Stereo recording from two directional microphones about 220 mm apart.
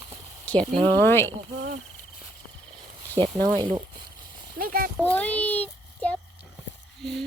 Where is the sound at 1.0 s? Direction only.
10° left (ahead or behind).